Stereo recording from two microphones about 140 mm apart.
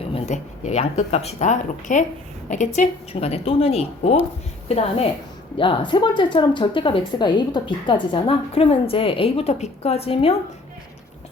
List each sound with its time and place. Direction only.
0.3 s a woman's voice: 55° left (ahead or behind)
5.5 s a woman's voice: 35° left (ahead or behind)